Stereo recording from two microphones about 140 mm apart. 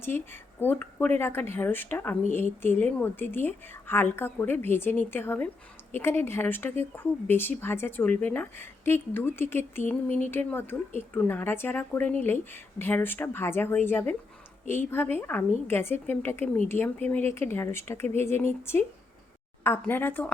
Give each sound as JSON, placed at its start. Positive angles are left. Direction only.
{"t": 0.6, "sound": "speech", "side_deg": 15}